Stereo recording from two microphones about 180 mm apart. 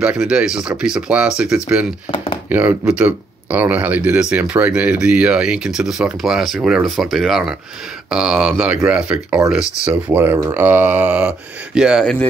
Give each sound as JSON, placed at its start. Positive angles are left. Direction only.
{"t": 0.0, "sound": "speech", "side_deg": -5}
{"t": 2.0, "sound": "a sound", "side_deg": 30}
{"t": 2.5, "sound": "speech", "side_deg": -10}